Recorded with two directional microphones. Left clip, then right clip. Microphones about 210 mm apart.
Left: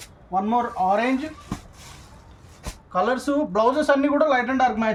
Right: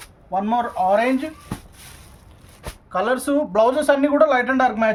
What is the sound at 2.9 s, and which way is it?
Speech, 55° right (ahead or behind).